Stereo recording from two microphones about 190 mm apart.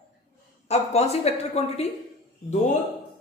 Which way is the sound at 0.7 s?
35° left (ahead or behind).